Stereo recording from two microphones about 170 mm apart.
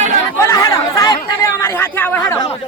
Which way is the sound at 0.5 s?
20° left (ahead or behind).